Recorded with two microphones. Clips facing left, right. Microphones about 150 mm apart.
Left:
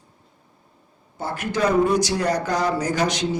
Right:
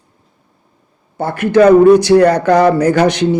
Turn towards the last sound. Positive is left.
turn(degrees=-60)  # may be behind; listen again after turning